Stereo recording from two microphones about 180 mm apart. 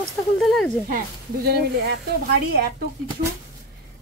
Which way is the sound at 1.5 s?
60° right (ahead or behind).